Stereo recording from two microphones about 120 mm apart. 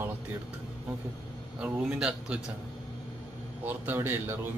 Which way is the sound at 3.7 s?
15° right (ahead or behind).